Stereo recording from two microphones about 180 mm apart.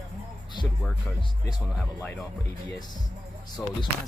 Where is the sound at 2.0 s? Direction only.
10° left (ahead or behind).